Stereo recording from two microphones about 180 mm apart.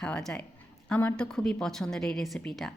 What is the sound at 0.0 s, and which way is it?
Speech, 5° left (ahead or behind).